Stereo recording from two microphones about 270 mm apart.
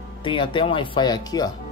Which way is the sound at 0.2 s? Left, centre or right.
Centre.